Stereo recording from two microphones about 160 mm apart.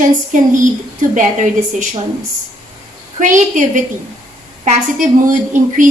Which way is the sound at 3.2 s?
50° right (ahead or behind).